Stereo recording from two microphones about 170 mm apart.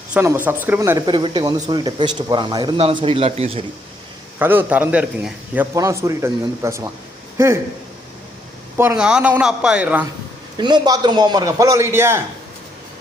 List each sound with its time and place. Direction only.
0.1 s speech: 10° right (ahead or behind); by 3.6 s 35° right (ahead or behind)
4.4 s a man's voice: 10° right (ahead or behind)
5.7 s a man's voice: 20° right (ahead or behind)
9.0 s a man's voice: 5° right (ahead or behind)
10.6 s speech: 25° right (ahead or behind)